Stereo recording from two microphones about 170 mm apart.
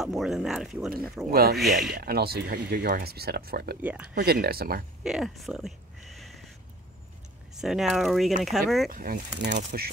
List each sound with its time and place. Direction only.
0.0 s speech: centre (ahead or behind)
1.3 s speech: 65° right (ahead or behind)
1.6 s speech: centre (ahead or behind)
2.0 s speech: 65° right (ahead or behind)
3.8 s speech: 10° right (ahead or behind)
4.1 s speech: 65° right (ahead or behind)
5.0 s a sound: centre (ahead or behind)
7.5 s speech: centre (ahead or behind)
8.8 s speech: 55° right (ahead or behind)